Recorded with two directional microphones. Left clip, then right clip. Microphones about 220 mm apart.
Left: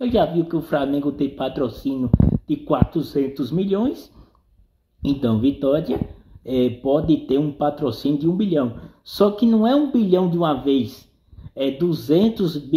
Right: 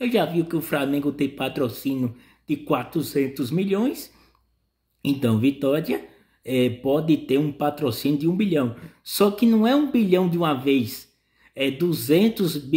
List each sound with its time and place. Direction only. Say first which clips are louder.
0.0 s speech: left 3 dB; 30° right (ahead or behind)